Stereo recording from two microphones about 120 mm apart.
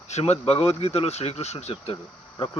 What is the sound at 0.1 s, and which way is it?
Speech, 60° left (ahead or behind).